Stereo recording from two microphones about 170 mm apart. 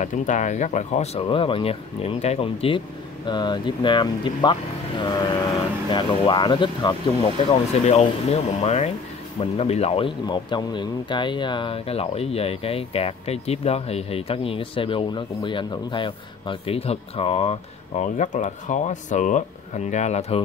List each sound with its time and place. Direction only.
0.0 s speech: 45° left (ahead or behind)